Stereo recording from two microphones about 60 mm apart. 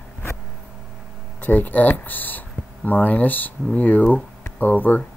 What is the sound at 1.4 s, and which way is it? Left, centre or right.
Speech, left.